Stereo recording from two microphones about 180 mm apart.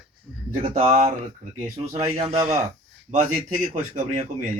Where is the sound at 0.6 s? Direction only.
35° right (ahead or behind).